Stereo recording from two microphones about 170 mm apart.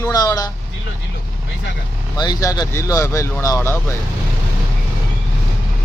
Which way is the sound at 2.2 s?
25° left (ahead or behind).